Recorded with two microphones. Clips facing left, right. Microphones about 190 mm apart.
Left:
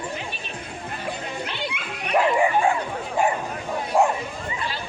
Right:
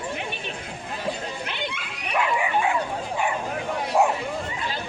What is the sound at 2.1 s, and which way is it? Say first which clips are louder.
Bow-wow: left 4 dB; 40° left (ahead or behind).